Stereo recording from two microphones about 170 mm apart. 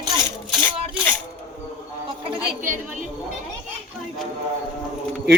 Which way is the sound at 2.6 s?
50° right (ahead or behind).